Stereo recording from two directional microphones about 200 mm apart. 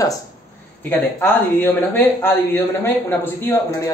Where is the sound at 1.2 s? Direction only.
10° left (ahead or behind).